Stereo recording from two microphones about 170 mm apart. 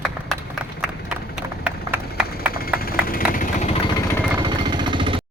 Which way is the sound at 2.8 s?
60° left (ahead or behind).